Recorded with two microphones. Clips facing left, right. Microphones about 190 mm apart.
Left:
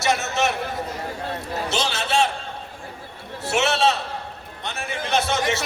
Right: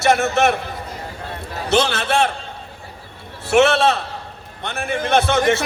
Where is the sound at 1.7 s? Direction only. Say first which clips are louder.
Right 7 dB; 55° right (ahead or behind).